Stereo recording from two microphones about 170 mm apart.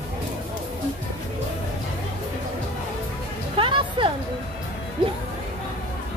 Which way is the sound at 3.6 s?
30° right (ahead or behind).